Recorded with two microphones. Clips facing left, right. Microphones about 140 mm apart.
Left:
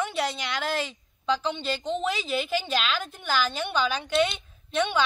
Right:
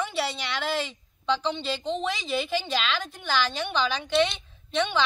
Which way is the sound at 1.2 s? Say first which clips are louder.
Even; 10° left (ahead or behind).